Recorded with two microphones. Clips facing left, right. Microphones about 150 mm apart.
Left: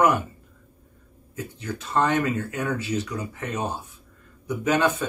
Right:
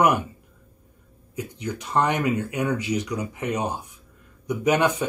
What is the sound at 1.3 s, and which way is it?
Speech, 15° right (ahead or behind).